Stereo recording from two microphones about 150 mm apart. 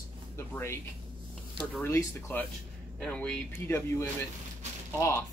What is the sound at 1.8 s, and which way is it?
Speech, 15° left (ahead or behind).